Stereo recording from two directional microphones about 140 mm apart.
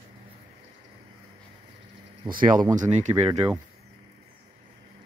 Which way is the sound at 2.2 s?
85° right.